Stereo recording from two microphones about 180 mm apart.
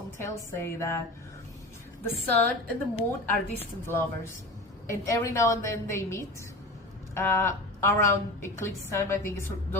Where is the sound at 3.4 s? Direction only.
10° left (ahead or behind).